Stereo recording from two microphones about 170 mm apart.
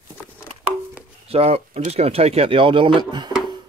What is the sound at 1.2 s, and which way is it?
Speech, 35° right (ahead or behind).